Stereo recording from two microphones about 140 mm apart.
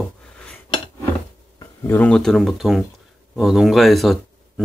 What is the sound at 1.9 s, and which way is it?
Speech, 10° left (ahead or behind).